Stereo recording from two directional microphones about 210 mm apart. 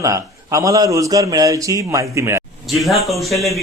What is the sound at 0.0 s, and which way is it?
Speech, 15° right (ahead or behind).